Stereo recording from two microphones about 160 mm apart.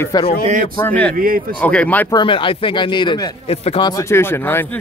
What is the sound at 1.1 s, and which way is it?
Speech, 65° right (ahead or behind).